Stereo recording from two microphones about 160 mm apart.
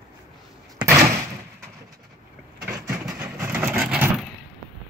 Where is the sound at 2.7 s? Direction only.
15° right (ahead or behind).